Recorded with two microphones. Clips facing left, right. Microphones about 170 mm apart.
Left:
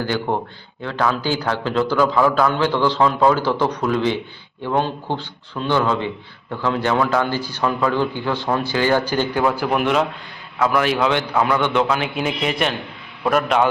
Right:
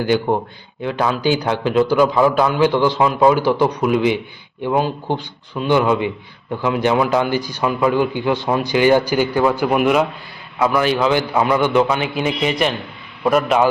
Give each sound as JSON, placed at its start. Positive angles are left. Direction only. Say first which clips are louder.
{"t": 0.0, "sound": "a man's voice", "louder": "right 5 dB", "side_deg": -15}